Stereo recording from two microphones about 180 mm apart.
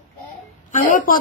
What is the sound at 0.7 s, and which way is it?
Speech, 50° left (ahead or behind).